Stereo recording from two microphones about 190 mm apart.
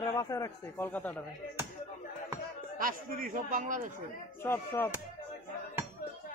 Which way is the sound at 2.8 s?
45° right (ahead or behind).